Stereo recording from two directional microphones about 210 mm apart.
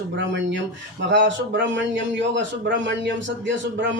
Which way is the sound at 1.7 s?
60° right (ahead or behind).